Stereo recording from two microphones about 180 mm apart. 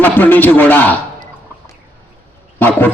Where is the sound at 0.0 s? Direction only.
10° left (ahead or behind).